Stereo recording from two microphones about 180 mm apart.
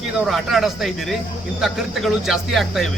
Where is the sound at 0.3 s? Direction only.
Centre (ahead or behind).